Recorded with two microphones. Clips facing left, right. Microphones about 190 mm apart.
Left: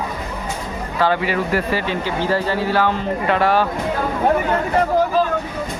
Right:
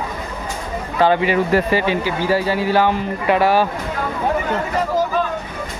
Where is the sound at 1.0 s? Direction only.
20° right (ahead or behind).